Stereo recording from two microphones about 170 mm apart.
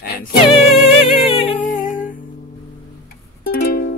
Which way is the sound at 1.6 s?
50° left (ahead or behind).